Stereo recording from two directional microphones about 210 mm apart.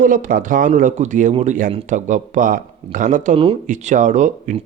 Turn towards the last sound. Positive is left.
turn(degrees=-35)  # may be behind; listen again after turning